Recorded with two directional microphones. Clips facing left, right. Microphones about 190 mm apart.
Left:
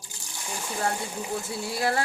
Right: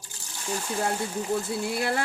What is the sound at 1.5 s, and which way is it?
Speech, 55° right (ahead or behind).